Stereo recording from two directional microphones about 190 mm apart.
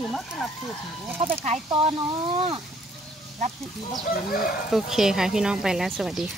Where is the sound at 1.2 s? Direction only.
30° right (ahead or behind).